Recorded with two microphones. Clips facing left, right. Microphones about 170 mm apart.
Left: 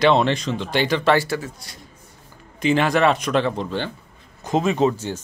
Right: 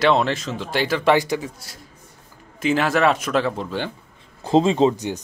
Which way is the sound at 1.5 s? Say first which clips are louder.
Even; 5° right (ahead or behind).